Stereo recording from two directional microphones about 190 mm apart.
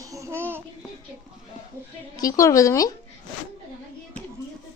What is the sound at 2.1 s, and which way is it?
Speech, 20° left (ahead or behind).